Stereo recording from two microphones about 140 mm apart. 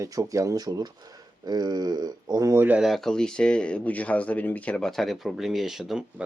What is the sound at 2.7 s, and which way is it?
Speech, centre (ahead or behind).